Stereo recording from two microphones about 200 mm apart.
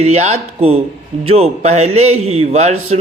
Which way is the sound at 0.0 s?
35° right (ahead or behind).